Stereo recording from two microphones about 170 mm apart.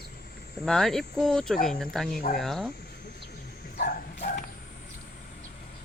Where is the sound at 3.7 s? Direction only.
50° left (ahead or behind).